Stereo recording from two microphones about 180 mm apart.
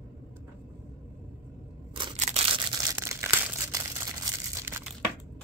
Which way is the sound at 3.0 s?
15° right (ahead or behind).